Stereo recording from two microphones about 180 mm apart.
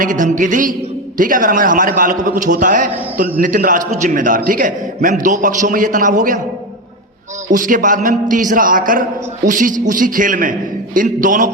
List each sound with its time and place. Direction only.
0.0 s a man's voice: 45° right (ahead or behind)
7.5 s a man's voice: 45° right (ahead or behind)